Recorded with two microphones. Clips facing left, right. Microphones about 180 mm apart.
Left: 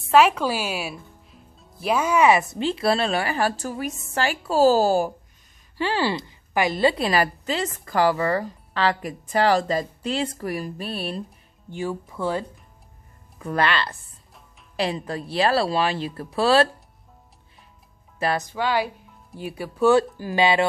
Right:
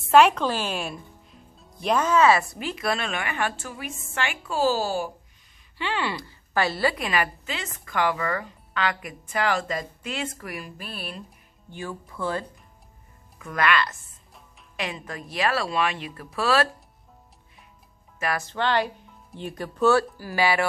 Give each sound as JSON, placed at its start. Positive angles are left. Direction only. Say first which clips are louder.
{"t": 0.1, "sound": "a woman's voice", "louder": "even", "side_deg": 5}
{"t": 6.1, "sound": "a woman's voice", "louder": "left 2 dB", "side_deg": 15}
{"t": 13.4, "sound": "a woman's voice", "louder": "left 1 dB", "side_deg": 30}
{"t": 18.5, "sound": "a woman's voice", "louder": "left 1 dB", "side_deg": 10}